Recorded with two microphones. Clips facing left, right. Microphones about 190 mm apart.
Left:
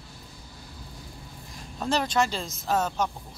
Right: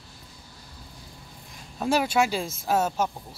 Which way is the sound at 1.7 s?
10° right (ahead or behind).